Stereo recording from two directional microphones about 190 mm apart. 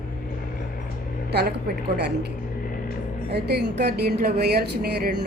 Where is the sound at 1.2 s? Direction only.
60° right (ahead or behind).